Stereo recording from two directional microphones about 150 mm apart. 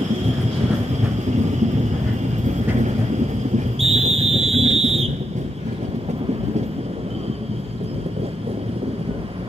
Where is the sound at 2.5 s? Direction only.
50° right (ahead or behind).